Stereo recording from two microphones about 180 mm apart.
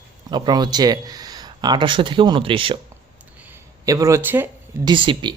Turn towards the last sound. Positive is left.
turn(degrees=-25)  # may be behind; listen again after turning